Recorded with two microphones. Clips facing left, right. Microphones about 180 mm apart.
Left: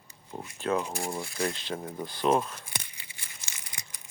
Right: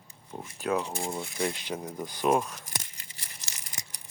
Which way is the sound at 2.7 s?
45° right (ahead or behind).